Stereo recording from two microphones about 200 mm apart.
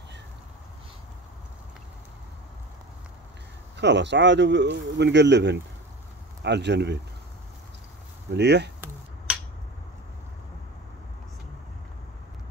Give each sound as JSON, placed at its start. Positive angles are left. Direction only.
{"t": 3.7, "sound": "speech", "side_deg": -60}
{"t": 8.3, "sound": "speech", "side_deg": -55}
{"t": 9.3, "sound": "a sound", "side_deg": -5}